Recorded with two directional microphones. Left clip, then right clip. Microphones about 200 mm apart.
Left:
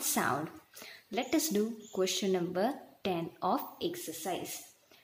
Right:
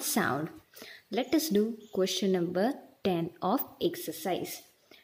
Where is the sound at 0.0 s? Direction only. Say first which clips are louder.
Right 2 dB; 30° right (ahead or behind).